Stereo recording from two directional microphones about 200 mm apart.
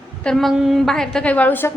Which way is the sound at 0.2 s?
5° left (ahead or behind).